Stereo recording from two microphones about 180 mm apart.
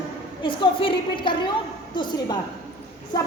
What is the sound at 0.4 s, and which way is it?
Speech, 30° left (ahead or behind).